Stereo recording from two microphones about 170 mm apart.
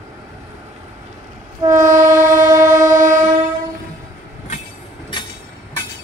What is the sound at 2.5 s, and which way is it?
Train, 20° right (ahead or behind).